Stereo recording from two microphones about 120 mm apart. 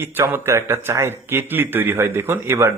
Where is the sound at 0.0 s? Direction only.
20° right (ahead or behind).